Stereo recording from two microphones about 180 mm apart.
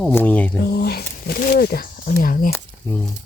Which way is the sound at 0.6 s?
60° left (ahead or behind).